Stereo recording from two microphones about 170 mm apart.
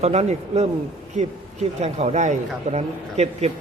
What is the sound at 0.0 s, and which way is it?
Speech, 40° right (ahead or behind).